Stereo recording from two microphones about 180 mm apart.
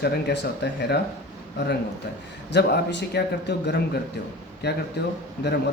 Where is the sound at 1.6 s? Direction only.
70° left (ahead or behind).